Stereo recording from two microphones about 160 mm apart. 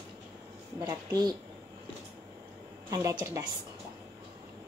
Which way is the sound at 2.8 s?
25° right (ahead or behind).